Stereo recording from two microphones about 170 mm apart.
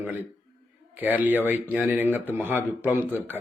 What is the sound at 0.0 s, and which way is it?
A man's voice, 10° right (ahead or behind).